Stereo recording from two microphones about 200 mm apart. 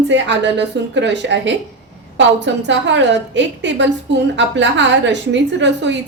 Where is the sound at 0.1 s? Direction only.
60° right (ahead or behind).